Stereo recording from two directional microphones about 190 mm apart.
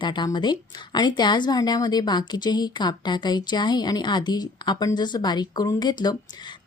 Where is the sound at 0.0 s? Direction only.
25° left (ahead or behind).